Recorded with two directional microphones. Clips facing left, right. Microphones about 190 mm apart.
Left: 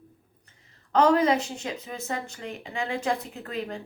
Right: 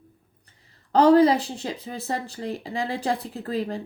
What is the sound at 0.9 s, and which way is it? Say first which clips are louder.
Speech: right 5 dB; 35° right (ahead or behind).